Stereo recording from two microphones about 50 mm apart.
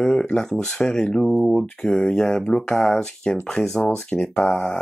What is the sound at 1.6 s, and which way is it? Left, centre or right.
Speech, centre.